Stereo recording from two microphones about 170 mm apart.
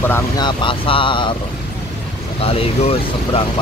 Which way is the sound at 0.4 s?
30° left (ahead or behind).